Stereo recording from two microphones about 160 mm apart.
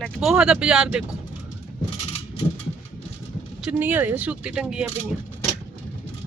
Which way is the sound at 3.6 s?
10° right (ahead or behind).